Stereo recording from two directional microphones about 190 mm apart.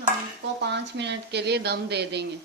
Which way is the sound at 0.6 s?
65° right (ahead or behind).